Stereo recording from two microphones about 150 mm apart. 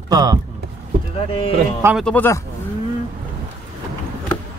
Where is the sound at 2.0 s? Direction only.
10° left (ahead or behind).